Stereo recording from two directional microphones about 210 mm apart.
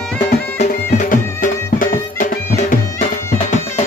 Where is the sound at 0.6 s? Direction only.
35° left (ahead or behind).